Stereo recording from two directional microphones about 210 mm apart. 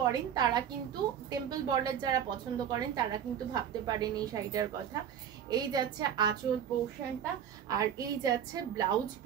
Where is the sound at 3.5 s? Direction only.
20° right (ahead or behind).